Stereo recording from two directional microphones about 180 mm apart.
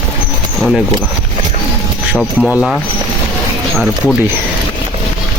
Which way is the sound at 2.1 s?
Centre (ahead or behind).